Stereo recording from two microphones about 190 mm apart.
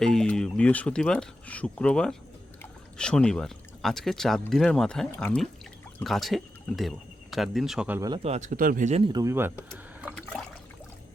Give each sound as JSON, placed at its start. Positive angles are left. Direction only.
{"t": 0.0, "sound": "speech", "side_deg": 5}
{"t": 8.2, "sound": "speech", "side_deg": -35}
{"t": 9.1, "sound": "speech", "side_deg": -15}
{"t": 9.7, "sound": "liquid", "side_deg": -10}